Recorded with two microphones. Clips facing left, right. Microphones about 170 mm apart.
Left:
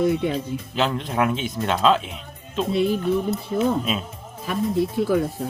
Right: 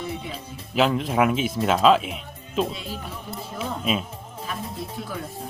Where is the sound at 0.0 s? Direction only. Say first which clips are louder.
Left 12 dB; 80° left.